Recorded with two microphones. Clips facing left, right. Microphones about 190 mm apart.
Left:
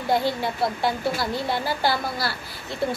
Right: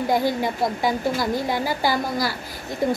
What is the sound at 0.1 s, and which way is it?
A woman's voice, 15° right (ahead or behind).